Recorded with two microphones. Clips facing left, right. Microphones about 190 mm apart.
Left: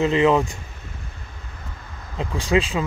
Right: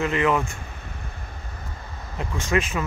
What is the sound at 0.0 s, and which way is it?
Speech, 25° left (ahead or behind).